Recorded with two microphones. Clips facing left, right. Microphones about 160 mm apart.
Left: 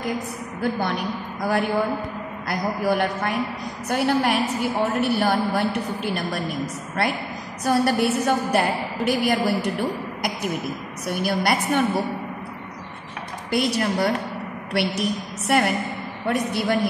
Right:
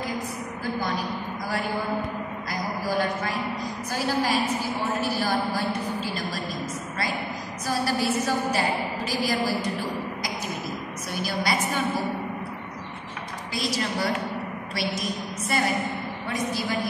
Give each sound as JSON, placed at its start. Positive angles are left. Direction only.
{"t": 0.6, "sound": "a woman's voice", "side_deg": 65}
{"t": 2.5, "sound": "a woman's voice", "side_deg": 65}
{"t": 13.5, "sound": "a woman's voice", "side_deg": 60}